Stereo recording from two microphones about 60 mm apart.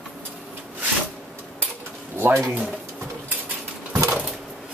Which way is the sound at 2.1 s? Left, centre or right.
Right.